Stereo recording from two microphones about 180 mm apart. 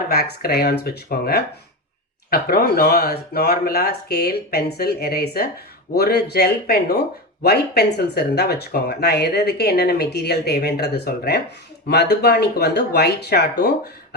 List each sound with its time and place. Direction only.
0.1 s speech: 60° left (ahead or behind)